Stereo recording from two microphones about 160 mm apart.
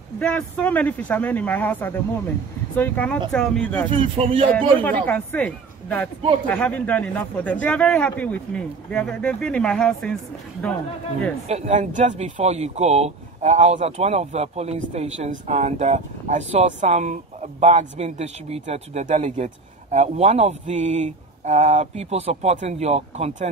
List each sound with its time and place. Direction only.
0.2 s speech: 5° left (ahead or behind)
3.9 s speech: 30° right (ahead or behind)
5.0 s speech: 10° left (ahead or behind)
11.4 s speech: 40° right (ahead or behind)